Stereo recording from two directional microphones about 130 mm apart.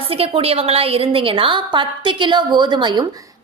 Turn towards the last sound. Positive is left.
turn(degrees=-35)  # may be behind; listen again after turning